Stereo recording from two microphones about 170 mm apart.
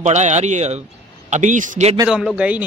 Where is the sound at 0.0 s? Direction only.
45° right (ahead or behind).